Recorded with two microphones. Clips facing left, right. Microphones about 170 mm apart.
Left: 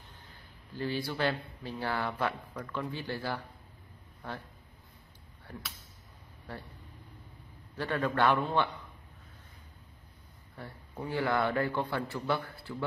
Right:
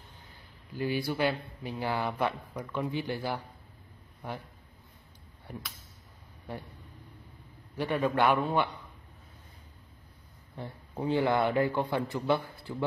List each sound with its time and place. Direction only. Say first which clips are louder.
0.7 s speech: right 3 dB; 15° right (ahead or behind)
5.5 s speech: right 2 dB; 15° right (ahead or behind)
7.7 s speech: right 3 dB; 15° right (ahead or behind)
10.6 s a man's voice: right 5 dB; 20° right (ahead or behind)